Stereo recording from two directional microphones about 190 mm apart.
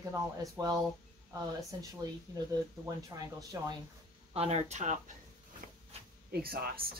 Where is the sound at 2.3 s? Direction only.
20° right (ahead or behind).